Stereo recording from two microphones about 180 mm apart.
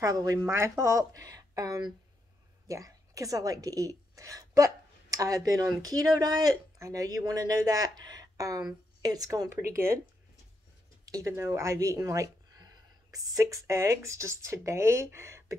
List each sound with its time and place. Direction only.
0.0 s a woman's voice: 20° right (ahead or behind)
11.1 s speech: 20° right (ahead or behind)